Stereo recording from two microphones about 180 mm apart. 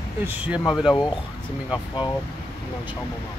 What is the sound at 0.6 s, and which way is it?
Speech, 25° left (ahead or behind).